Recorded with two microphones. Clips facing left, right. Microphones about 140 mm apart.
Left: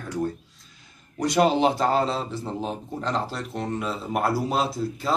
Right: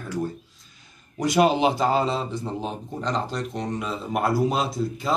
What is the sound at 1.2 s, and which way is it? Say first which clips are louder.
Speech: right 1 dB; centre (ahead or behind).